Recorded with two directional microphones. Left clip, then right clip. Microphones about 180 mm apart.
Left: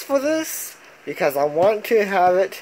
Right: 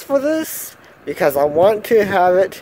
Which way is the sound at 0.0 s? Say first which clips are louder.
Right 3 dB; 20° right (ahead or behind).